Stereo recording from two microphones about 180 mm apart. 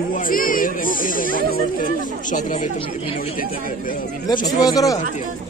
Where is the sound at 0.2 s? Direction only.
50° left (ahead or behind).